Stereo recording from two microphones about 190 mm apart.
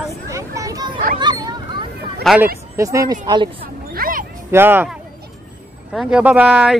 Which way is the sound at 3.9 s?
50° right (ahead or behind).